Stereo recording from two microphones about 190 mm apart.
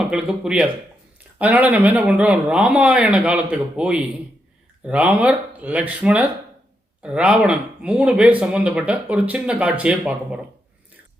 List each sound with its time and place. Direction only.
0.1 s speech: 5° right (ahead or behind)